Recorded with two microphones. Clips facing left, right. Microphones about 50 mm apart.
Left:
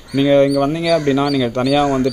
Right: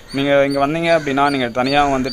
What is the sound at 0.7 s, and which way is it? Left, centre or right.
Speech, right.